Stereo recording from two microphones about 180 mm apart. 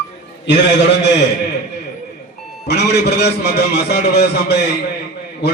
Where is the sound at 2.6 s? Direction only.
70° left (ahead or behind).